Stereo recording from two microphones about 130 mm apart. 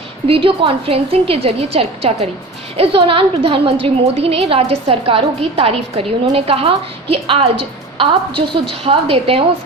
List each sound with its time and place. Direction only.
0.3 s a woman's voice: 40° right (ahead or behind)